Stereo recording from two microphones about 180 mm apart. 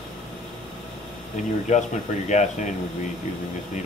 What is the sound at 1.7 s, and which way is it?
Speech, 40° left (ahead or behind).